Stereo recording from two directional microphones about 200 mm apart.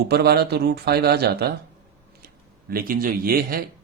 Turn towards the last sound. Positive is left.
turn(degrees=-45)  # may be behind; listen again after turning